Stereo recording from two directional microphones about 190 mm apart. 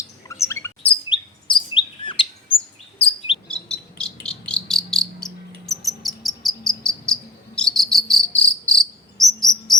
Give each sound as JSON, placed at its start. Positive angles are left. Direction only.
{"t": 0.3, "sound": "chirp", "side_deg": 15}
{"t": 0.8, "sound": "chirp", "side_deg": 25}
{"t": 3.5, "sound": "cricket", "side_deg": 5}